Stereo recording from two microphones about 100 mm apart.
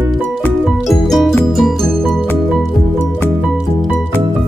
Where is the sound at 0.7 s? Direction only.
Centre (ahead or behind).